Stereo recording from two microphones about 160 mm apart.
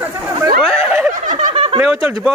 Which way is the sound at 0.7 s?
10° right (ahead or behind).